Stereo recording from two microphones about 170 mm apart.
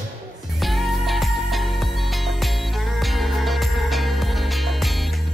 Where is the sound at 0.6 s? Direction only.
Centre (ahead or behind).